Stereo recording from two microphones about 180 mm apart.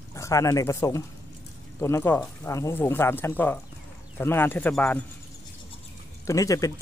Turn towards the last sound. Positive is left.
turn(degrees=20)  # may be behind; listen again after turning